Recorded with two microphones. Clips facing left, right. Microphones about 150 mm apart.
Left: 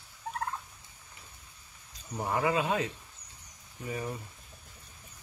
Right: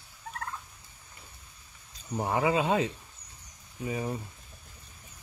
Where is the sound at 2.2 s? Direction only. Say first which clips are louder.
Right 2 dB; 20° right (ahead or behind).